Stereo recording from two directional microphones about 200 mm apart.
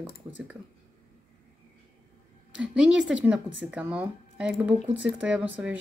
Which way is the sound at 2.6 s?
5° right (ahead or behind).